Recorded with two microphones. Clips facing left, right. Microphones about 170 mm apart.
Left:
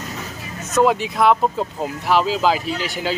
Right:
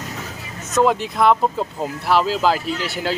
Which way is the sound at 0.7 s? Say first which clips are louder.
Left 1 dB; 5° left (ahead or behind).